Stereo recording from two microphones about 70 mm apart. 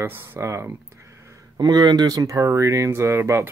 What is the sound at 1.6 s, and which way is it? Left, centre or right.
Speech, right.